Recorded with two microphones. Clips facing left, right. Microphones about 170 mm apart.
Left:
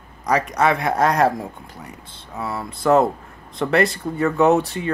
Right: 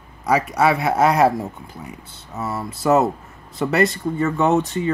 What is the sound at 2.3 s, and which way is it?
Speech, 5° right (ahead or behind).